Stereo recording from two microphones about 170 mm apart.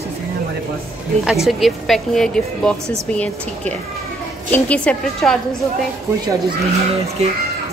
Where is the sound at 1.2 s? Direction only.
Centre (ahead or behind).